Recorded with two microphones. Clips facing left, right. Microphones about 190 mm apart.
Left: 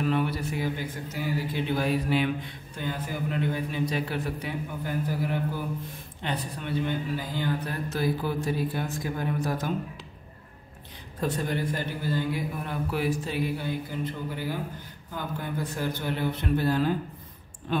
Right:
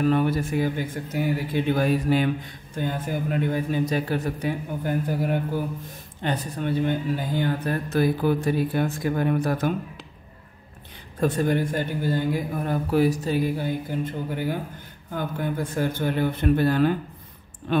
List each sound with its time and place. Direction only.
0.0 s speech: 45° right (ahead or behind); by 9.7 s 60° right (ahead or behind)
11.1 s speech: 50° right (ahead or behind)